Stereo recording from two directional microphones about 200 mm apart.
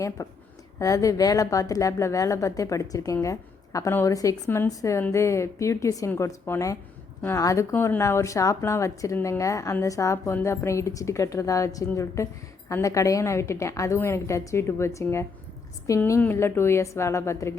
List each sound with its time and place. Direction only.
0.2 s a woman's voice: 15° left (ahead or behind)